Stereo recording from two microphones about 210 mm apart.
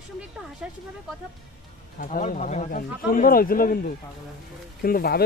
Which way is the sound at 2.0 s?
40° left (ahead or behind).